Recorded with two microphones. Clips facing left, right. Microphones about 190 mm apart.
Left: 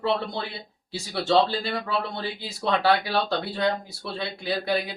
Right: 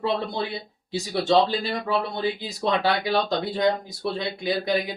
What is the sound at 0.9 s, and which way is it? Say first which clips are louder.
Speech: right 1 dB; 15° right (ahead or behind).